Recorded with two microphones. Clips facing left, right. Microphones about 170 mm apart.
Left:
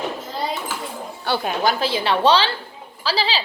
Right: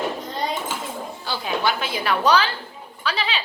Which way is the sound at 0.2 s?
5° left (ahead or behind).